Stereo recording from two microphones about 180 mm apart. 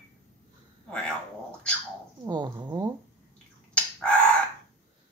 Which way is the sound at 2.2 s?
25° right (ahead or behind).